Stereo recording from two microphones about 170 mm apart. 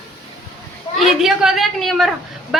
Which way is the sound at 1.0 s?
Centre (ahead or behind).